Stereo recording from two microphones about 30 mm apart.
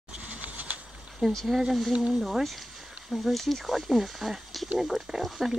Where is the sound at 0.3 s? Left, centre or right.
Right.